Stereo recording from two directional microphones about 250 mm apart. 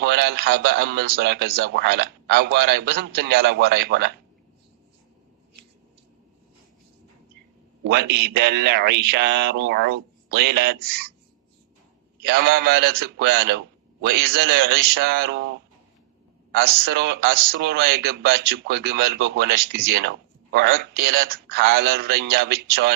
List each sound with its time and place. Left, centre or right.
0.0 s a man's voice: right
7.9 s a man's voice: right
12.2 s a man's voice: right